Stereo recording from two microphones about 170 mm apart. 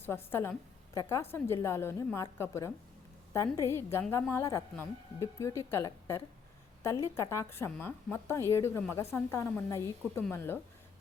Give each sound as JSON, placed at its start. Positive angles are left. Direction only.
{"t": 0.0, "sound": "a woman's voice", "side_deg": 15}